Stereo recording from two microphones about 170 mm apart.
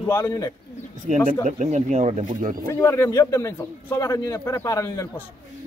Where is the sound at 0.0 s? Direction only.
15° left (ahead or behind).